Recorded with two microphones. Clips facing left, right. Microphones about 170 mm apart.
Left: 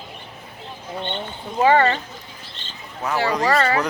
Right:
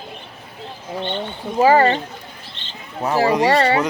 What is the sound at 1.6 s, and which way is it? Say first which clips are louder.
Speech: right 3 dB; 30° right (ahead or behind).